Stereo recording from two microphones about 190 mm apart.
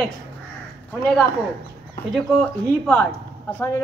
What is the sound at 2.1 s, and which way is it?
Speech, 5° left (ahead or behind).